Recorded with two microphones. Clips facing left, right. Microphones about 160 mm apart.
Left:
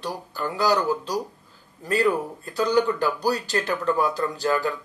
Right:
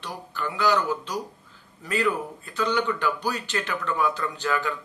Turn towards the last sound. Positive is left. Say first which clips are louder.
# left 4 dB
turn(degrees=35)  # may be behind; listen again after turning